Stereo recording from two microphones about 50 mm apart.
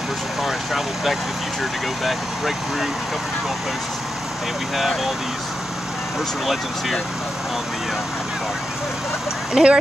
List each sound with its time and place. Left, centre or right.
0.4 s vehicle: centre
1.6 s speech: centre
4.7 s speech: centre
6.4 s speech: centre
9.5 s speech: centre